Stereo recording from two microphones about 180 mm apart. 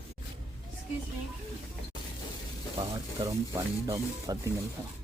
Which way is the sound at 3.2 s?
30° right (ahead or behind).